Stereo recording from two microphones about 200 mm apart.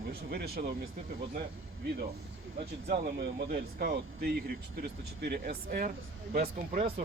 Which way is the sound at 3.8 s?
50° right (ahead or behind).